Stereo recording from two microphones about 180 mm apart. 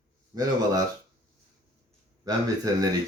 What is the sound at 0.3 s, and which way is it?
Speech, 20° right (ahead or behind).